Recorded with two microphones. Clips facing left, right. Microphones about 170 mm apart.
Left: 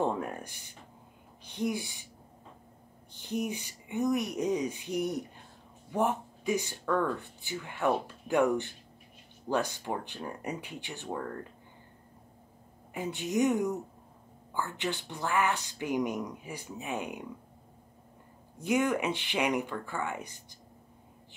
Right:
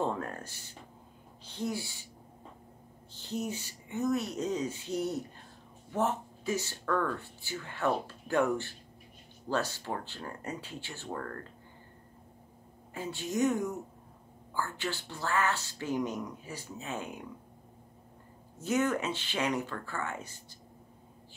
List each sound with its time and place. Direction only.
0.0 s speech: 15° left (ahead or behind)
3.2 s speech: 15° left (ahead or behind)
12.9 s speech: 15° left (ahead or behind)
18.6 s speech: 15° left (ahead or behind)